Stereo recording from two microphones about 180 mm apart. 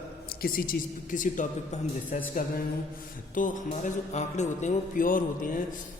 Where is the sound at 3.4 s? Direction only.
45° left (ahead or behind).